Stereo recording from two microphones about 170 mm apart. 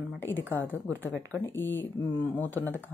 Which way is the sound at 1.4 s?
15° left (ahead or behind).